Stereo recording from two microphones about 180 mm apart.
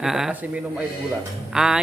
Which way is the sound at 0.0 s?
Centre (ahead or behind).